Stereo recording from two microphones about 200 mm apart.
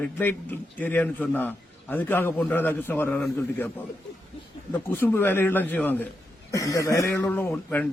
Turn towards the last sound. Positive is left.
turn(degrees=5)  # may be behind; listen again after turning